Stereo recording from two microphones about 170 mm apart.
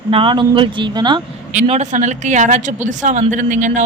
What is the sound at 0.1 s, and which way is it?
Speech, 30° right (ahead or behind).